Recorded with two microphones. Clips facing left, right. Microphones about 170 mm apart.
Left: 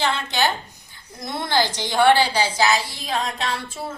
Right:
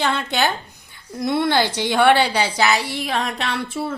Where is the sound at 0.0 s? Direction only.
60° right (ahead or behind).